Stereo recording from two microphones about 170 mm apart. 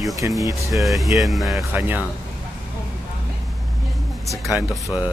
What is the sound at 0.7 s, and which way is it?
Speech, centre (ahead or behind).